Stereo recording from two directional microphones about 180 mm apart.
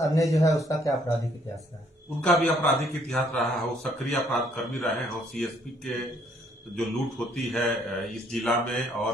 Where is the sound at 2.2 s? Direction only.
Centre (ahead or behind).